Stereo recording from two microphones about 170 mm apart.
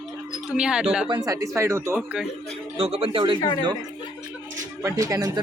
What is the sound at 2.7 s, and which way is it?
Speech, 35° right (ahead or behind).